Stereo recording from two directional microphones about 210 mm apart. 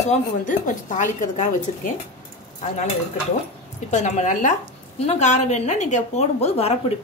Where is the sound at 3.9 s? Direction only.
35° left (ahead or behind).